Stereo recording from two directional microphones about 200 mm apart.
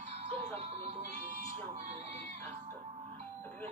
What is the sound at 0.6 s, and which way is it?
Speech, 30° right (ahead or behind).